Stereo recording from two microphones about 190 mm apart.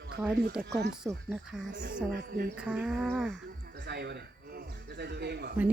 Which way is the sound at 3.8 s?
60° right (ahead or behind).